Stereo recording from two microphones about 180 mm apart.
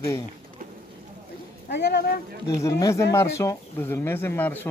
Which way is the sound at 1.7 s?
70° left (ahead or behind).